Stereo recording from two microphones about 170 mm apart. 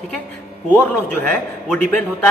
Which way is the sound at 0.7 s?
10° left (ahead or behind).